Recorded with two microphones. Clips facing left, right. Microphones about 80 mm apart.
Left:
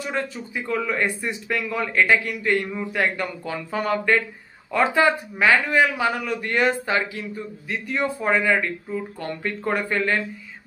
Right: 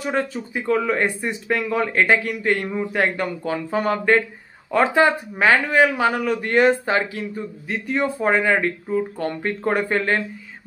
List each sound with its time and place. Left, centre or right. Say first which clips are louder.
0.0 s speech: right 4 dB; right
2.4 s a man's voice: right 2 dB; right